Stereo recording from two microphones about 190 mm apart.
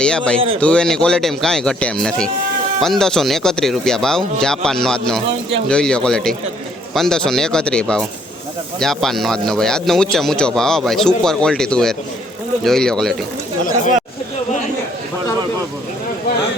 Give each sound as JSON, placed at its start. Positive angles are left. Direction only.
{"t": 0.0, "sound": "a man's voice", "side_deg": 5}